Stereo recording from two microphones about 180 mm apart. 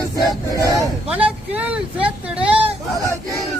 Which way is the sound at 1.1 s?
10° right (ahead or behind).